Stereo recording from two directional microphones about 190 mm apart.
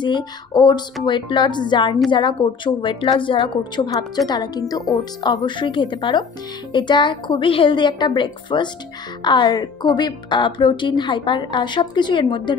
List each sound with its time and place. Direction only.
0.0 s a woman's voice: 25° left (ahead or behind)